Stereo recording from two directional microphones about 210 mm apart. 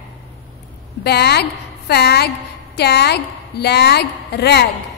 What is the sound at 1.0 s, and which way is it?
A woman's voice, 50° left (ahead or behind).